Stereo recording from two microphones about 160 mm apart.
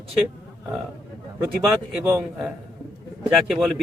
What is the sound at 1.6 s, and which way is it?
Speech, 15° right (ahead or behind).